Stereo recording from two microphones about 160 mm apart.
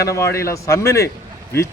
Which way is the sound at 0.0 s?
20° left (ahead or behind).